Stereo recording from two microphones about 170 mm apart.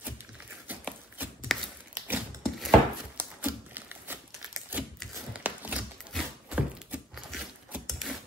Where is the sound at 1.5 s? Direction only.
Centre (ahead or behind).